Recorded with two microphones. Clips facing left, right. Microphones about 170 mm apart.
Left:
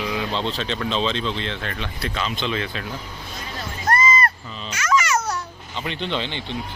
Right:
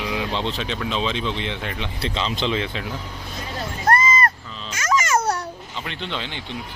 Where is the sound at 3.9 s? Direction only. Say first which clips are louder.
Right 1 dB; 50° right (ahead or behind).